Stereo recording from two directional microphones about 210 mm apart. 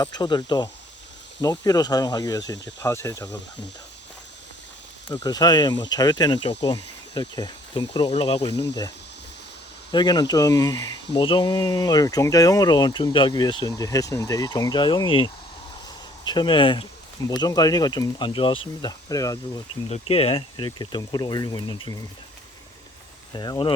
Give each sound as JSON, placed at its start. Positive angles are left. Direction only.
{"t": 0.0, "sound": "speech", "side_deg": 20}
{"t": 5.0, "sound": "speech", "side_deg": 20}
{"t": 9.9, "sound": "speech", "side_deg": 20}
{"t": 19.9, "sound": "speech", "side_deg": 30}
{"t": 23.3, "sound": "speech", "side_deg": 20}